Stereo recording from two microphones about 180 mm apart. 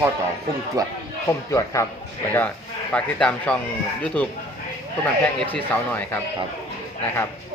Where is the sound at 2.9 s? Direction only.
5° left (ahead or behind).